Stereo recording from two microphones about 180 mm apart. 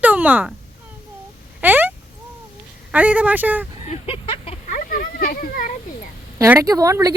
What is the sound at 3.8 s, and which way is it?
Speech, 30° left (ahead or behind).